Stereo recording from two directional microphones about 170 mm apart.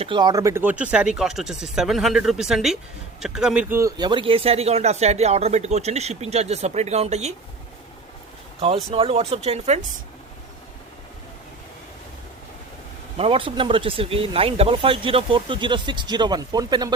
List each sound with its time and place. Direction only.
0.0 s speech: 25° right (ahead or behind)
8.6 s speech: 35° right (ahead or behind)
13.1 s speech: 35° right (ahead or behind)